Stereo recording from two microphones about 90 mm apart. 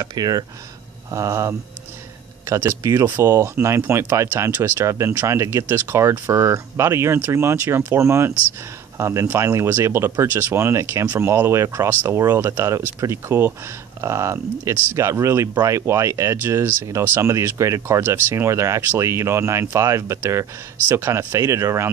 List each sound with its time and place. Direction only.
0.1 s speech: 50° right (ahead or behind)
1.1 s speech: 35° right (ahead or behind)